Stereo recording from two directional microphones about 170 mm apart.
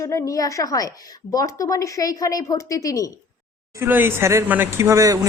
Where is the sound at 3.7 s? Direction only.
15° right (ahead or behind).